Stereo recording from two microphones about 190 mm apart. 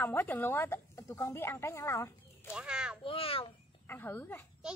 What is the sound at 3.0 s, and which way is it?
Babbling, 30° left (ahead or behind).